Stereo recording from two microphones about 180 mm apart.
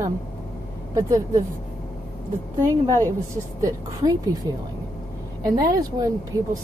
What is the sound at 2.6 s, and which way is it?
Speech, 15° right (ahead or behind).